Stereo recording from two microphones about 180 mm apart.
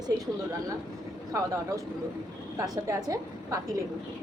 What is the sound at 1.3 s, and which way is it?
A woman's voice, 20° right (ahead or behind).